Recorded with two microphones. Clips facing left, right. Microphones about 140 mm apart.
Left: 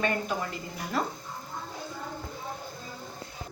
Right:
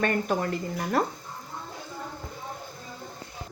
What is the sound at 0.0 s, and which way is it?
A woman's voice, 55° right (ahead or behind).